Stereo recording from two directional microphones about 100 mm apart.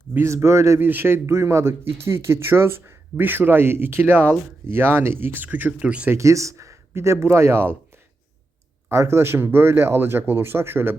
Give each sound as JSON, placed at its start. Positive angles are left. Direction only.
{"t": 0.1, "sound": "a man's voice", "side_deg": -25}
{"t": 6.1, "sound": "a man's voice", "side_deg": -30}
{"t": 8.9, "sound": "a man's voice", "side_deg": -25}